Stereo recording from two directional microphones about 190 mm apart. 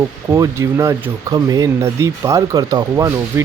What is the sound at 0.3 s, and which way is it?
Speech, 15° right (ahead or behind).